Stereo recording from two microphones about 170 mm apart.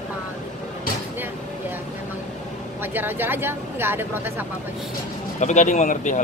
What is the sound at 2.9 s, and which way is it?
Speech, 10° right (ahead or behind).